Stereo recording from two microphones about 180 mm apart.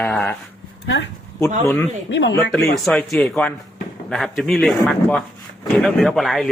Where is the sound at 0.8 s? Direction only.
90° left.